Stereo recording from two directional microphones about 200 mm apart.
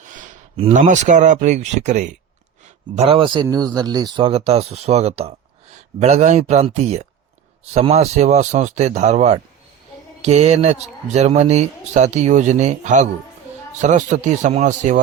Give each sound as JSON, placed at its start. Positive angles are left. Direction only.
{"t": 0.0, "sound": "a sound", "side_deg": -40}
{"t": 0.5, "sound": "speech", "side_deg": -35}
{"t": 4.3, "sound": "speech", "side_deg": -30}